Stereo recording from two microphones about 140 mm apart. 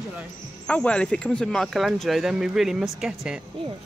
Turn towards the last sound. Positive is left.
turn(degrees=-5)  # may be behind; listen again after turning